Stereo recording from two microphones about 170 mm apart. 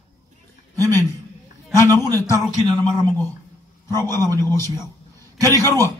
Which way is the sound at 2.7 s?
25° right (ahead or behind).